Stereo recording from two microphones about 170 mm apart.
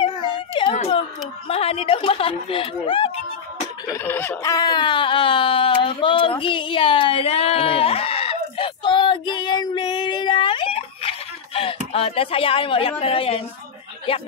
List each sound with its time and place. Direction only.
0.3 s children playing: 30° left (ahead or behind)
1.5 s speech: 35° left (ahead or behind)
3.8 s speech: 15° left (ahead or behind); by 13.4 s 35° left (ahead or behind)